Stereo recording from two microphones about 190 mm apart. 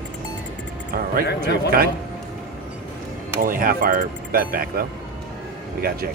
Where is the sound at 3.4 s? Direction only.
45° right (ahead or behind).